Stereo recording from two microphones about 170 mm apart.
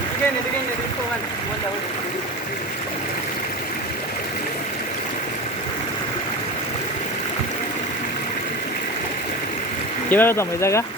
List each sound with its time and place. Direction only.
10.1 s speech: 10° left (ahead or behind)